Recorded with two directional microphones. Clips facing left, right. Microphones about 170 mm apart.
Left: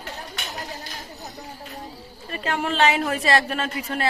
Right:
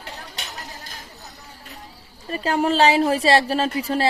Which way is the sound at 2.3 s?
35° right (ahead or behind).